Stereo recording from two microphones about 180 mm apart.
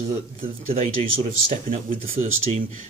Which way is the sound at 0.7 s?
35° right (ahead or behind).